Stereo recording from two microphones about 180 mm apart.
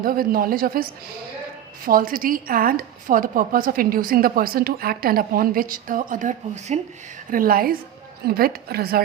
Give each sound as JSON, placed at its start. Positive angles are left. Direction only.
{"t": 0.0, "sound": "a woman's voice", "side_deg": -50}